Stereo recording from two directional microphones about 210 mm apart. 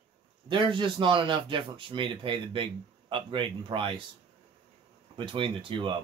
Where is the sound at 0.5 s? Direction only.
25° right (ahead or behind).